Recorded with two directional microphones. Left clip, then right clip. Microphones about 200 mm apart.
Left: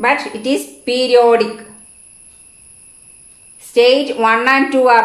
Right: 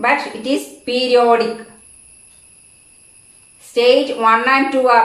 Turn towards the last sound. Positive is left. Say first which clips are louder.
# left 2 dB
turn(degrees=45)  # may be behind; listen again after turning